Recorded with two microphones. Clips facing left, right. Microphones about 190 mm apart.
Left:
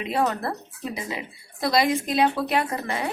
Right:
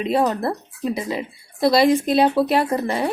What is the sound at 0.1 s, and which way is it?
Speech, 30° right (ahead or behind).